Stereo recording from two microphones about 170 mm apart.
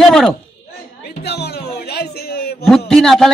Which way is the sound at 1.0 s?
75° left (ahead or behind).